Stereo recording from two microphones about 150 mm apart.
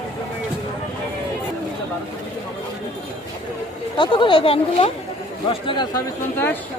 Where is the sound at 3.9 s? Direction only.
30° left (ahead or behind).